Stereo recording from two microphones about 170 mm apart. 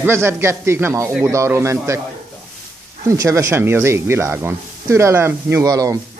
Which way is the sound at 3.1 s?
20° right (ahead or behind).